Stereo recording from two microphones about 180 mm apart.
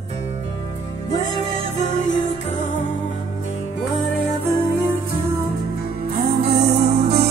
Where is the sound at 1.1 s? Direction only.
40° left (ahead or behind).